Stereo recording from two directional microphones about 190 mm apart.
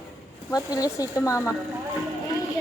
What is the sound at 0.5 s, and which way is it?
Speech, 20° left (ahead or behind).